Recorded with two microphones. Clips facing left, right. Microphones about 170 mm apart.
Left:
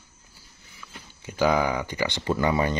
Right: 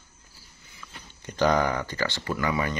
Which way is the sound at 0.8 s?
5° left (ahead or behind).